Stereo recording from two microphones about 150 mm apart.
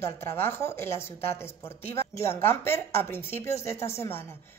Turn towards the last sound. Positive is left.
turn(degrees=15)  # may be behind; listen again after turning